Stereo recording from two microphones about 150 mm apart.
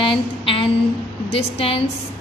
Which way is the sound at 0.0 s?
35° left (ahead or behind).